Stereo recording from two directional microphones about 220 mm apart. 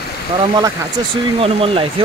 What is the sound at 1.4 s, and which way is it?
Speech, 25° right (ahead or behind).